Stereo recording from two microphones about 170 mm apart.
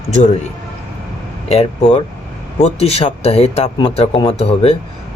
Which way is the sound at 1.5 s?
35° left (ahead or behind).